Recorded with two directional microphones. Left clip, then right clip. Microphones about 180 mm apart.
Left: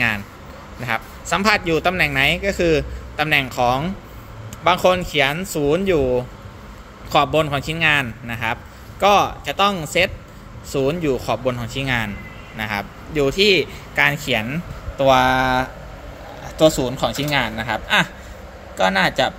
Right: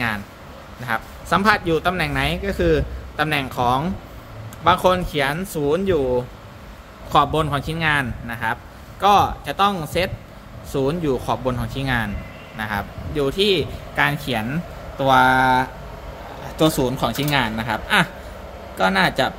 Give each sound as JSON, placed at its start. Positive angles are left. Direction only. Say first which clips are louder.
{"t": 0.8, "sound": "a man's voice", "louder": "even", "side_deg": -5}
{"t": 16.5, "sound": "a man's voice", "louder": "left 3 dB", "side_deg": -20}